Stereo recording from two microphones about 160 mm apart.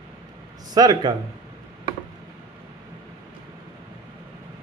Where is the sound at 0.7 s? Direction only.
25° right (ahead or behind).